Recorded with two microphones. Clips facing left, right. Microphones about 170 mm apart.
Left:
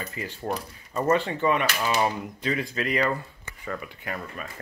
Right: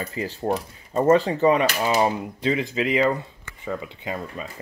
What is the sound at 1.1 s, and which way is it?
Speech, 35° right (ahead or behind).